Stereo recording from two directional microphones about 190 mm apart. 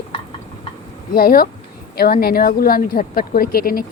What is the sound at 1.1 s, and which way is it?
Speech, 50° left (ahead or behind).